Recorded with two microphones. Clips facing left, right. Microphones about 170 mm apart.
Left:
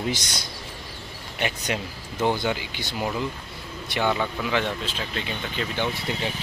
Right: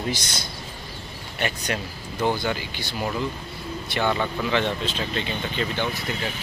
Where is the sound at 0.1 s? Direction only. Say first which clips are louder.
Even; 15° left (ahead or behind).